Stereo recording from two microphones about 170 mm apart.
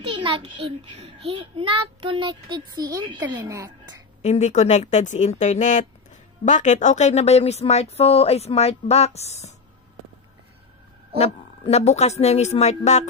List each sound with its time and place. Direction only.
0.0 s a child's voice: 30° right (ahead or behind)
4.2 s speech: 40° left (ahead or behind)
11.1 s speech: 35° left (ahead or behind)